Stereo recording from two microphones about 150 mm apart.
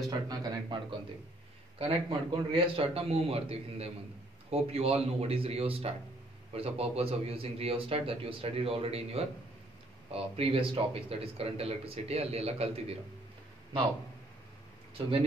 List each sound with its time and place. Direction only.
0.1 s speech: 25° right (ahead or behind); by 12.9 s 40° right (ahead or behind)
15.0 s speech: 40° right (ahead or behind)